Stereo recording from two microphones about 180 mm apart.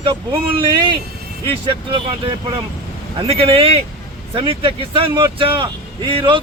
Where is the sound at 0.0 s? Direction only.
25° right (ahead or behind).